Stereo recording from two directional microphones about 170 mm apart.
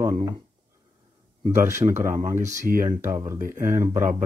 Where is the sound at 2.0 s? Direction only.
15° right (ahead or behind).